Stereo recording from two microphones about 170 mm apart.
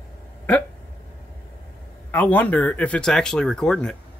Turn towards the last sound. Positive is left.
turn(degrees=5)  # may be behind; listen again after turning